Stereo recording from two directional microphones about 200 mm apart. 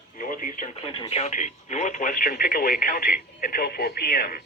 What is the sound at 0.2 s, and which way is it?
Radio, 40° left (ahead or behind).